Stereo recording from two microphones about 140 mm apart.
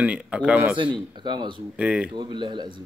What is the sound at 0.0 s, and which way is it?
Speech, 10° right (ahead or behind).